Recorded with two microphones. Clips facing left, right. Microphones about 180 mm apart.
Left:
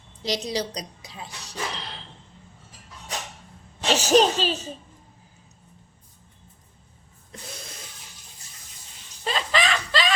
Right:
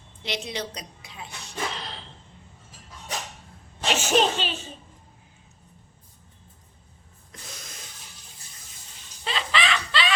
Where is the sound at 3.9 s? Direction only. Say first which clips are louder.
Left 4 dB; 40° left (ahead or behind).